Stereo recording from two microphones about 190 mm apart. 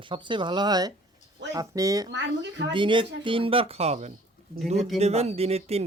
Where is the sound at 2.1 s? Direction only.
65° right (ahead or behind).